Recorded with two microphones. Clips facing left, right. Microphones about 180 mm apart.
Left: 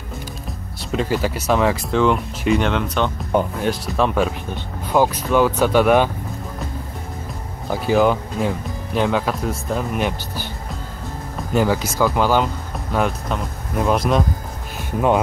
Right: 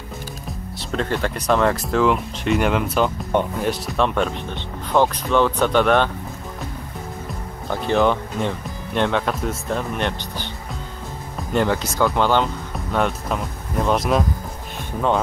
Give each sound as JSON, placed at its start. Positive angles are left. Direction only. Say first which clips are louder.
{"t": 0.9, "sound": "speech", "louder": "left 2 dB", "side_deg": 5}
{"t": 7.7, "sound": "speech", "louder": "left 2 dB", "side_deg": 5}
{"t": 11.5, "sound": "speech", "louder": "left 2 dB", "side_deg": 5}